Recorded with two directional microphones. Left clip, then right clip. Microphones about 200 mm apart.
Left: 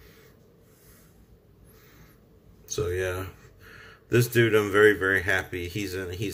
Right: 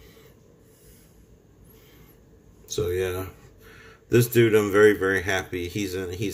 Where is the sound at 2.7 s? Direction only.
5° right (ahead or behind).